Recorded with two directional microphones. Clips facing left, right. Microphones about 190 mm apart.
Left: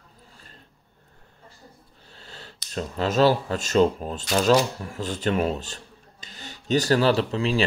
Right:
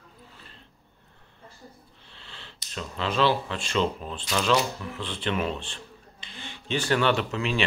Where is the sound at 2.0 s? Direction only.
40° left (ahead or behind).